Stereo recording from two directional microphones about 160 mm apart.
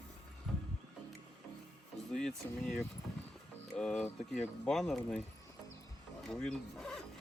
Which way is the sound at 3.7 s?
5° left (ahead or behind).